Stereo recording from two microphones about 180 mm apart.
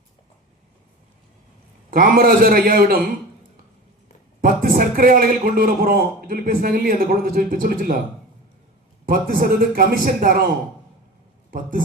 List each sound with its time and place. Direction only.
1.9 s a man's voice: 55° right (ahead or behind)
4.4 s a man's voice: 50° right (ahead or behind)
9.0 s a man's voice: 55° right (ahead or behind)